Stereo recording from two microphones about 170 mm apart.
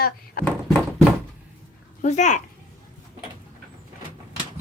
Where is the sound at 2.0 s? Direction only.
45° left (ahead or behind).